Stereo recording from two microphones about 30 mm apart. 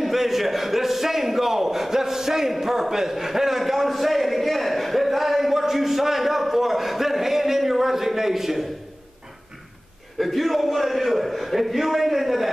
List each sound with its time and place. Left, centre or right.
0.0 s a man's voice: centre
2.5 s a sound: centre
10.1 s a man's voice: centre